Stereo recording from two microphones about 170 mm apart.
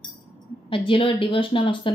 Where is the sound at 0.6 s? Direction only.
30° left (ahead or behind).